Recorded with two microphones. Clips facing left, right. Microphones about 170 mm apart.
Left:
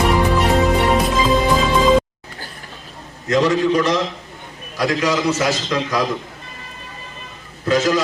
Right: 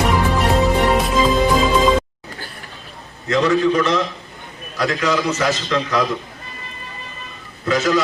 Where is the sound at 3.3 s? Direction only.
20° left (ahead or behind).